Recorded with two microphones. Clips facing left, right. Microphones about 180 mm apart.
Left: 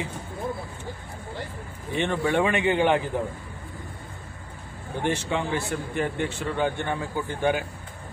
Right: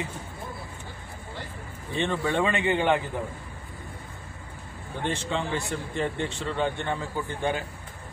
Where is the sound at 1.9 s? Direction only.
15° left (ahead or behind).